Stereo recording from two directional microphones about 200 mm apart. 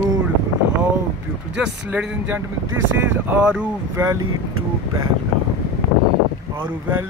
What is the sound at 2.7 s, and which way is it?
Speech, 70° right (ahead or behind).